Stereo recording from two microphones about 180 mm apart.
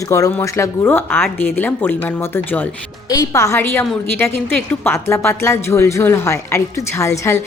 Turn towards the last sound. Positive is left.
turn(degrees=15)  # may be behind; listen again after turning